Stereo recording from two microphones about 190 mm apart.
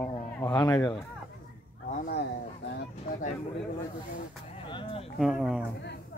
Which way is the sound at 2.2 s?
60° left (ahead or behind).